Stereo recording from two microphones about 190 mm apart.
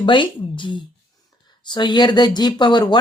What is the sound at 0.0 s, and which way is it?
Speech, 25° left (ahead or behind).